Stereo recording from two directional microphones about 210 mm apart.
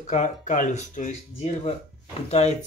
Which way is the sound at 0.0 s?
35° left (ahead or behind).